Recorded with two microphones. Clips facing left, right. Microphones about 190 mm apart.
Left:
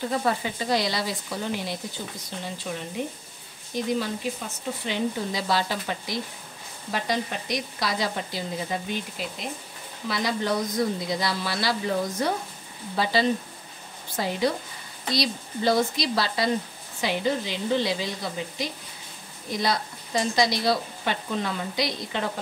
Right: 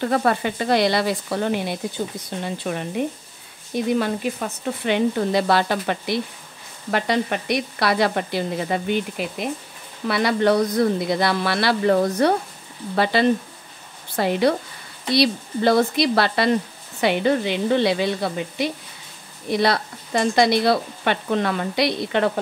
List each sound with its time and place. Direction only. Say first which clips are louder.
0.0 s speech: right 6 dB; 65° right (ahead or behind)
4.0 s speech: right 6 dB; 65° right (ahead or behind)